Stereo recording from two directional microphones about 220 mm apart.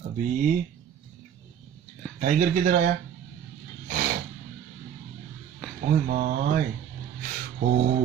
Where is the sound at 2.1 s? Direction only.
35° right (ahead or behind).